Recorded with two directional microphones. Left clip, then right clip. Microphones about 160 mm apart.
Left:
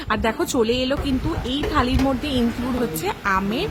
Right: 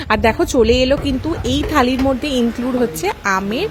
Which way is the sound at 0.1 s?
40° right (ahead or behind).